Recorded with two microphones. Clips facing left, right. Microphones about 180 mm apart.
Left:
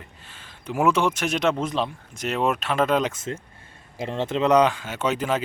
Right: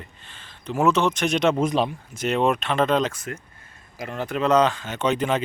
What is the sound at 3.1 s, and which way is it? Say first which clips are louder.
Speech: left 3 dB; 25° left (ahead or behind).